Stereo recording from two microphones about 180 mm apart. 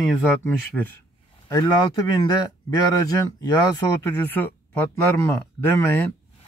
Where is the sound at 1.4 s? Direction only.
20° left (ahead or behind).